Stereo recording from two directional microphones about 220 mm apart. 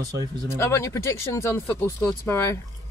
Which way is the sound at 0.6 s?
10° left (ahead or behind).